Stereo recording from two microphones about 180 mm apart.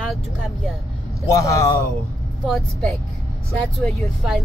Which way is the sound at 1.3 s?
15° left (ahead or behind).